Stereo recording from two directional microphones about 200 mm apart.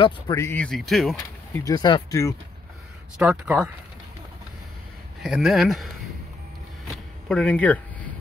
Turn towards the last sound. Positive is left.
turn(degrees=5)  # may be behind; listen again after turning